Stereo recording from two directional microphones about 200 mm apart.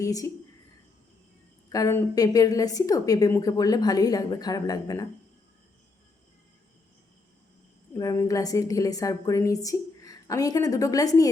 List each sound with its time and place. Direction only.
0.0 s speech: 15° left (ahead or behind)
1.7 s a woman's voice: 15° left (ahead or behind)
7.9 s a woman's voice: 15° left (ahead or behind)